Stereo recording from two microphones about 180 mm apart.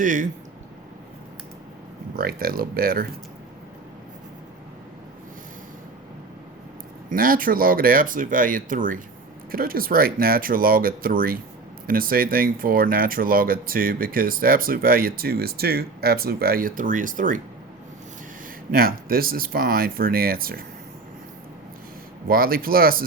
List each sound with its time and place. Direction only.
0.0 s speech: 45° right (ahead or behind)
2.1 s speech: 55° right (ahead or behind)
7.1 s speech: 50° right (ahead or behind)
18.7 s speech: 55° right (ahead or behind)
22.3 s speech: 55° right (ahead or behind)